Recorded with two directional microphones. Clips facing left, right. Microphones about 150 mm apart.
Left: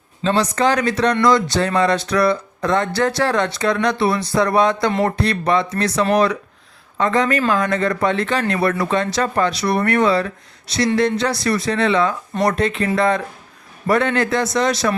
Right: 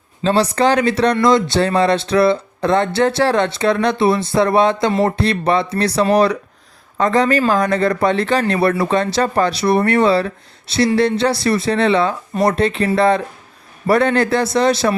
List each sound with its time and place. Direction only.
0.3 s speech: 30° right (ahead or behind)